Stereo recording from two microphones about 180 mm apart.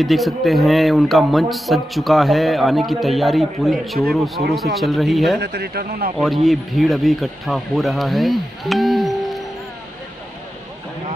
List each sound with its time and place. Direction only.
0.0 s speech: centre (ahead or behind)
5.4 s speech: 65° right (ahead or behind)
6.1 s speech: centre (ahead or behind)